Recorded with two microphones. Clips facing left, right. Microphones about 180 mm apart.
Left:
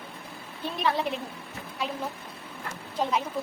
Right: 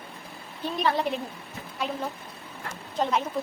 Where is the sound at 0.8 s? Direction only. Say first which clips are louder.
Right 2 dB; centre (ahead or behind).